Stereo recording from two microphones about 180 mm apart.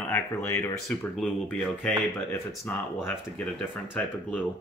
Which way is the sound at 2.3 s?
15° left (ahead or behind).